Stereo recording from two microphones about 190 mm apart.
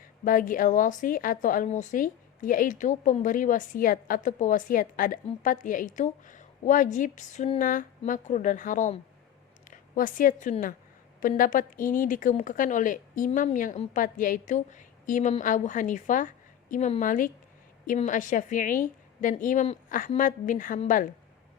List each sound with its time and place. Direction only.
0.3 s a woman's voice: 45° left (ahead or behind)